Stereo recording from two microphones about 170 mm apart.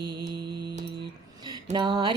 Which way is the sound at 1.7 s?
25° right (ahead or behind).